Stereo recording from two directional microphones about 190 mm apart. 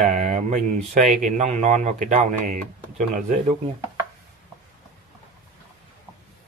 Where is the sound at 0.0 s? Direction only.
40° right (ahead or behind).